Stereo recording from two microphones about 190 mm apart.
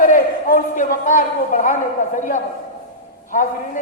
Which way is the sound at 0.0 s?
45° left (ahead or behind).